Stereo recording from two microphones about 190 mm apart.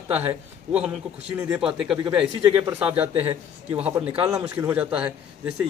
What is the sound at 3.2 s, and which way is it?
Speech, 30° right (ahead or behind).